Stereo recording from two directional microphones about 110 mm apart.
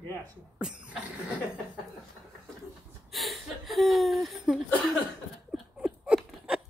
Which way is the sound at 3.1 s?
Centre (ahead or behind).